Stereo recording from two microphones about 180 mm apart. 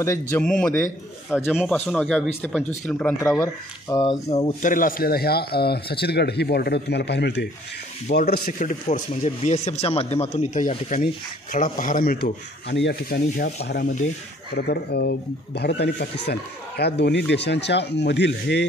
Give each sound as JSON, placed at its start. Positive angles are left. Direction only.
{"t": 0.0, "sound": "speech", "side_deg": 15}
{"t": 0.4, "sound": "speech", "side_deg": 5}
{"t": 3.9, "sound": "speech", "side_deg": 25}
{"t": 8.1, "sound": "speech", "side_deg": 60}
{"t": 14.5, "sound": "speech", "side_deg": 65}